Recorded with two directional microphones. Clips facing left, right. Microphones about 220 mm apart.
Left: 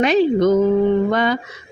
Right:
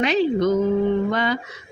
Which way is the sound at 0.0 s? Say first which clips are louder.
Left 4 dB; 50° left (ahead or behind).